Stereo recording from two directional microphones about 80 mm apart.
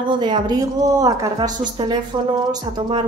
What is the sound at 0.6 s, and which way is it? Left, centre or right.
Speech, right.